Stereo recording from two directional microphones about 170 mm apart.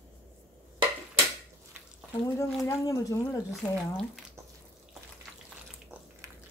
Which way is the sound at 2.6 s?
15° left (ahead or behind).